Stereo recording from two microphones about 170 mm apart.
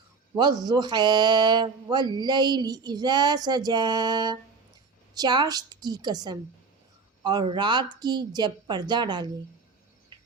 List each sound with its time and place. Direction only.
0.3 s speech: 25° right (ahead or behind)